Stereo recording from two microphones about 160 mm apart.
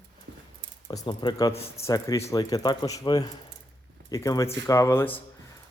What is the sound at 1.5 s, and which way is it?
Speech, 40° left (ahead or behind).